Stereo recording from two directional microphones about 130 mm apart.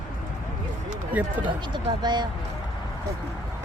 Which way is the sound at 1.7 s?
35° right (ahead or behind).